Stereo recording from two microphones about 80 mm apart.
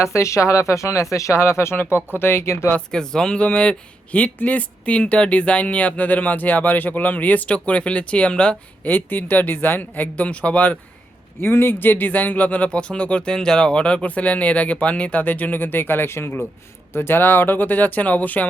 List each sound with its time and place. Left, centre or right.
0.0 s speech: left
2.7 s speech: centre
11.3 s speech: left